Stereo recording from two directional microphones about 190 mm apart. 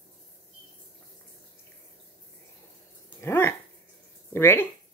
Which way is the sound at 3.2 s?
10° left (ahead or behind).